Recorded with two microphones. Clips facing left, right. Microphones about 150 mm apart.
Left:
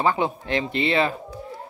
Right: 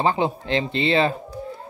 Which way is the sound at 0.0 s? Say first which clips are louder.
Right 1 dB; 25° right (ahead or behind).